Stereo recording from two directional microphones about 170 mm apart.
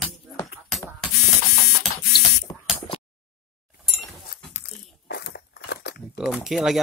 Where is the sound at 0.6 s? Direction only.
Centre (ahead or behind).